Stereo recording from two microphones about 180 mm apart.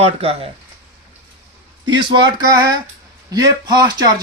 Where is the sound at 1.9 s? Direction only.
25° right (ahead or behind).